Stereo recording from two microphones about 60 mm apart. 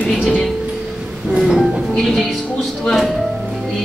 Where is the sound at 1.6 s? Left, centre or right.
Centre.